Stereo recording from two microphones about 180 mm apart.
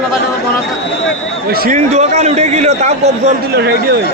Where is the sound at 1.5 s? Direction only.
55° right (ahead or behind).